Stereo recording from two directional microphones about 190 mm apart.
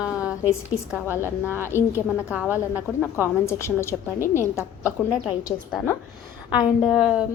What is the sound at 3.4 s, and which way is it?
A woman's voice, 15° left (ahead or behind).